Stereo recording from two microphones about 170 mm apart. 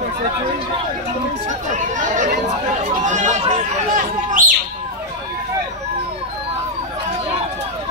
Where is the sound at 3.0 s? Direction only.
45° right (ahead or behind).